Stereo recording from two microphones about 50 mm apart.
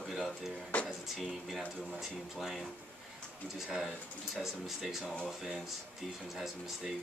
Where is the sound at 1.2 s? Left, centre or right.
Centre.